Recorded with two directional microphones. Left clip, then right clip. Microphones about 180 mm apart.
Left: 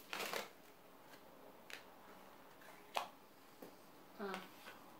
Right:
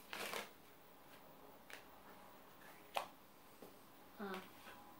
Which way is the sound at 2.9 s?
Centre (ahead or behind).